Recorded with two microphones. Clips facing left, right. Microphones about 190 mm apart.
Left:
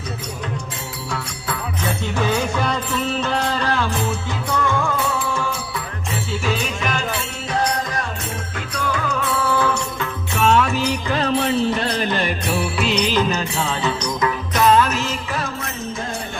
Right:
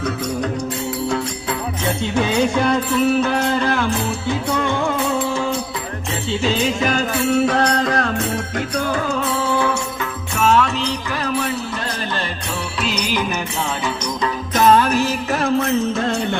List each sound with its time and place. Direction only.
2.1 s music: 15° right (ahead or behind); by 7.0 s 30° right (ahead or behind)
7.4 s music: 65° right (ahead or behind)
8.5 s music: 35° right (ahead or behind)
10.3 s music: centre (ahead or behind)
11.1 s music: 25° left (ahead or behind)
12.8 s music: 5° right (ahead or behind)
14.5 s music: 45° right (ahead or behind)
14.8 s music: 35° right (ahead or behind)
15.4 s music: 70° right (ahead or behind)